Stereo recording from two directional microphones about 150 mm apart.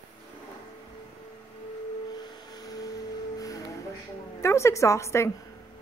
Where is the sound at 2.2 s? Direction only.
25° left (ahead or behind).